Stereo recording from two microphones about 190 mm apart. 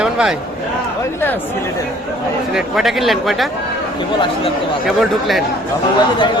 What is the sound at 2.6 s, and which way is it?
Speech, centre (ahead or behind).